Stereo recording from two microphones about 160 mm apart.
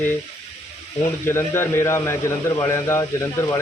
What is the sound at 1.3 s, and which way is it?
Speech, 15° left (ahead or behind).